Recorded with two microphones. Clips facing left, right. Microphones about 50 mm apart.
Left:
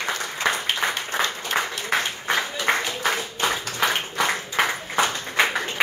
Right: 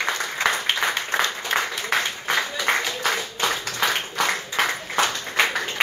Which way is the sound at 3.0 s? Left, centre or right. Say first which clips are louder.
Even; centre.